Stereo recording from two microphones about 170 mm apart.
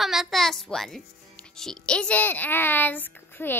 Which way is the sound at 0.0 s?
Centre (ahead or behind).